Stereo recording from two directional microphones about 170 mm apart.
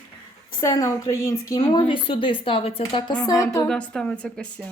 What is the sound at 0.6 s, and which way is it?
A woman's voice, 20° left (ahead or behind).